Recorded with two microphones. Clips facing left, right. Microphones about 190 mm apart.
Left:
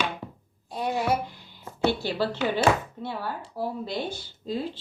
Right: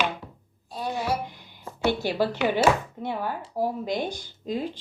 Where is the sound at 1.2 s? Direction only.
15° right (ahead or behind).